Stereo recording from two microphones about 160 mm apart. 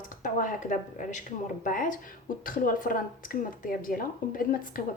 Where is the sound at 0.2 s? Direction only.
55° left (ahead or behind).